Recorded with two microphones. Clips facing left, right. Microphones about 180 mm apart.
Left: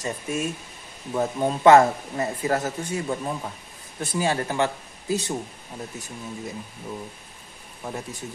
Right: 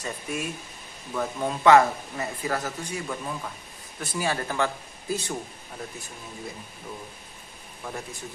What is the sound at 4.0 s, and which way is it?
Speech, 25° left (ahead or behind).